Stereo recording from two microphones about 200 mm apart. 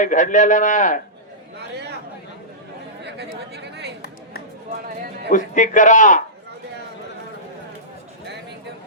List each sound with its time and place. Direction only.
0.0 s a man's voice: 40° left (ahead or behind)
1.5 s speech: 55° right (ahead or behind)
3.0 s speech: 55° right (ahead or behind)
5.3 s a man's voice: 40° left (ahead or behind)